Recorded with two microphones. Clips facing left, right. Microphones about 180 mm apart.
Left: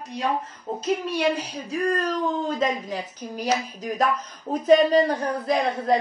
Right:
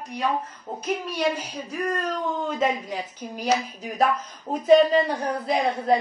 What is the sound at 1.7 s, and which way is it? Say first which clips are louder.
A woman's voice: left 3 dB; 35° left (ahead or behind).